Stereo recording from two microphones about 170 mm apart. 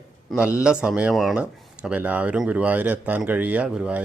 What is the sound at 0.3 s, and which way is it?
Speech, 10° right (ahead or behind).